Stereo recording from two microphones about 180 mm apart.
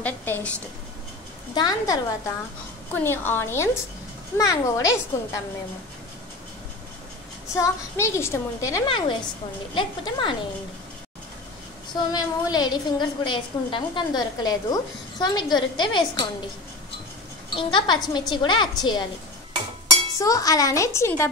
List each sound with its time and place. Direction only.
0.0 s a sound: 10° left (ahead or behind)
1.5 s a woman's voice: 25° left (ahead or behind)
7.5 s a woman's voice: 15° left (ahead or behind)
11.9 s a woman's voice: 20° left (ahead or behind)
17.6 s a woman's voice: 25° left (ahead or behind)
20.2 s a woman's voice: 20° left (ahead or behind)